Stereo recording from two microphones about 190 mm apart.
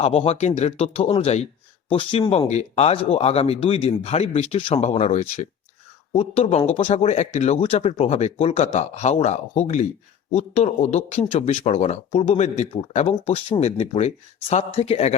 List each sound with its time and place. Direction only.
0.0 s speech: 35° left (ahead or behind)